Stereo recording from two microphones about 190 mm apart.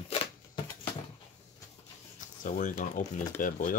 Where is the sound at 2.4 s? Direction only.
45° left (ahead or behind).